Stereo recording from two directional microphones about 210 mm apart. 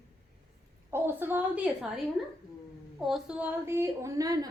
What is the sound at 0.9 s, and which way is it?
Speech, 10° right (ahead or behind).